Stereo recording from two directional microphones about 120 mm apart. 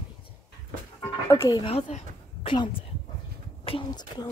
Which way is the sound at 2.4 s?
45° left (ahead or behind).